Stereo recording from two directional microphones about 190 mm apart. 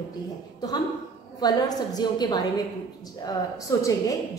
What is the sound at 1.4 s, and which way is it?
A woman's voice, 20° left (ahead or behind).